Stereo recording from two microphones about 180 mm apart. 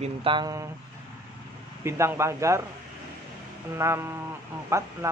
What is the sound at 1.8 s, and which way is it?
Speech, 15° right (ahead or behind).